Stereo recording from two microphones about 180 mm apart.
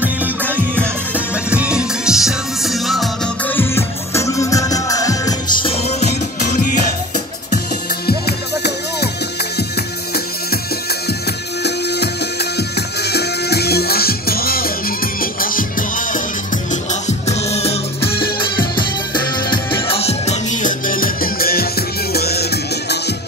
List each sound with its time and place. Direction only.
0.0 s music: 10° right (ahead or behind)
3.5 s music: 15° left (ahead or behind); by 6.0 s 35° left (ahead or behind)
8.1 s music: 65° left (ahead or behind)
11.6 s music: 65° left (ahead or behind)
17.3 s music: 35° left (ahead or behind)
18.0 s music: 60° left (ahead or behind)
19.1 s music: 25° left (ahead or behind); by 23.1 s 65° left (ahead or behind)